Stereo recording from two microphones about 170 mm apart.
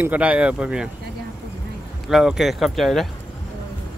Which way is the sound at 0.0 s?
10° right (ahead or behind).